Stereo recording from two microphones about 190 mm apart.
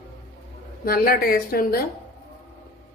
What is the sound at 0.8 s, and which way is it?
Speech, 50° left (ahead or behind).